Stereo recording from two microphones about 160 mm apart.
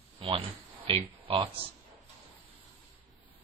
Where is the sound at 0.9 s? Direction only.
35° right (ahead or behind).